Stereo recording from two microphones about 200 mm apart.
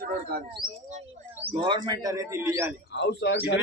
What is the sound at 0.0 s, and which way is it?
Speech, 50° right (ahead or behind).